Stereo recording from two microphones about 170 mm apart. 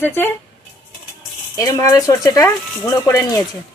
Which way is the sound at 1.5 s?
20° left (ahead or behind).